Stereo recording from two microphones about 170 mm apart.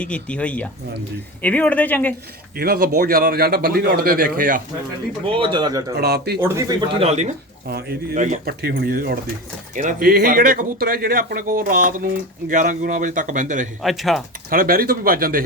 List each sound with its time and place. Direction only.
0.0 s speech: 5° left (ahead or behind)
2.6 s speech: 60° right (ahead or behind)
5.2 s speech: 30° right (ahead or behind)
6.0 s speech: 70° right (ahead or behind)
6.4 s speech: 20° right (ahead or behind)
7.0 s speech: 40° right (ahead or behind)
7.7 s speech: 65° right (ahead or behind)
8.1 s speech: 45° right (ahead or behind)
8.4 s speech: 70° right (ahead or behind)
9.7 s speech: 55° right (ahead or behind)
13.8 s speech: centre (ahead or behind)
14.5 s speech: 55° right (ahead or behind)